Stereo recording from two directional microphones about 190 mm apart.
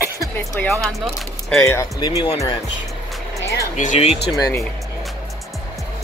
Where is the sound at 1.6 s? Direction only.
15° left (ahead or behind).